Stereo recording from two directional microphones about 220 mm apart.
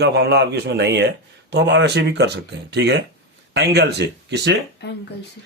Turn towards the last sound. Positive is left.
turn(degrees=50)  # may be behind; listen again after turning